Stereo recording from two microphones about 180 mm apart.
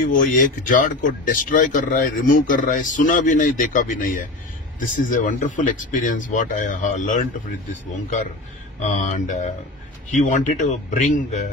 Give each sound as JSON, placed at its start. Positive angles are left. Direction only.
{"t": 0.2, "sound": "speech", "side_deg": 45}
{"t": 8.8, "sound": "speech", "side_deg": 45}